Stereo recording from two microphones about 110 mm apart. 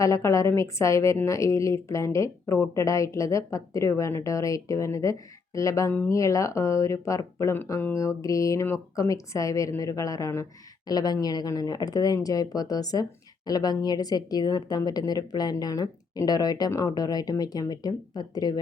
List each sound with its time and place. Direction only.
0.0 s a woman's voice: 30° left (ahead or behind)